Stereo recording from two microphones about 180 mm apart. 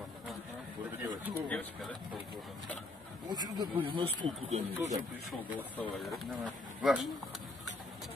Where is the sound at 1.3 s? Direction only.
10° left (ahead or behind).